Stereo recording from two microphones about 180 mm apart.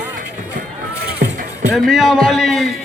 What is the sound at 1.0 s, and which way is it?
Music, 65° right (ahead or behind).